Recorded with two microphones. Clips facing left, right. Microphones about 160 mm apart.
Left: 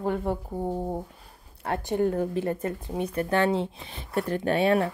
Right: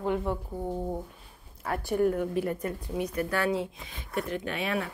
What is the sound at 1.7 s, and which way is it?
Speech, 20° left (ahead or behind).